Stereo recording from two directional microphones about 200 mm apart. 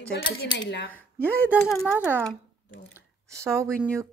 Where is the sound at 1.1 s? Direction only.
10° right (ahead or behind).